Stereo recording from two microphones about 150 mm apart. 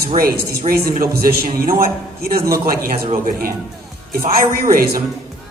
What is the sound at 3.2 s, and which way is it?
Speech, 75° right (ahead or behind).